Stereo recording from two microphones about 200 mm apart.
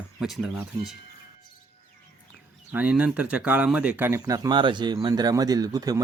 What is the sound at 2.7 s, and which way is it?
Speech, 10° right (ahead or behind).